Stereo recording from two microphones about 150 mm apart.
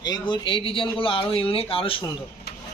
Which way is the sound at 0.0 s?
30° left (ahead or behind).